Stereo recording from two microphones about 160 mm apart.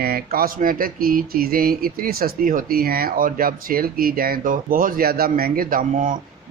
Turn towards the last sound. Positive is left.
turn(degrees=-55)  # may be behind; listen again after turning